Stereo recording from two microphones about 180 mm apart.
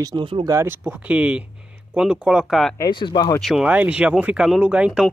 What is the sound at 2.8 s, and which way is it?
Speech, 25° left (ahead or behind).